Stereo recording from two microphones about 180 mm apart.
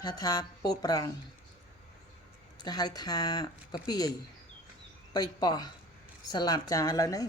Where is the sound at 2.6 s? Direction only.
20° left (ahead or behind).